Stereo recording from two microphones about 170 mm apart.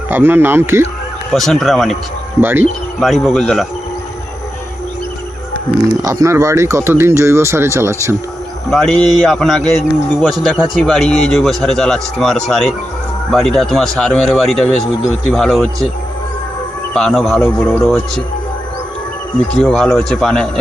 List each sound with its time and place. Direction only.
0.1 s speech: 10° right (ahead or behind)
1.3 s speech: centre (ahead or behind)
2.4 s speech: 10° right (ahead or behind)
3.0 s speech: centre (ahead or behind)
6.0 s speech: 20° right (ahead or behind)
8.7 s speech: 5° left (ahead or behind)
16.9 s speech: centre (ahead or behind)
19.5 s speech: centre (ahead or behind)